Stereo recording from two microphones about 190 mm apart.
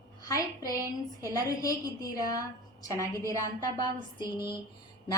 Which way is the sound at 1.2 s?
20° left (ahead or behind).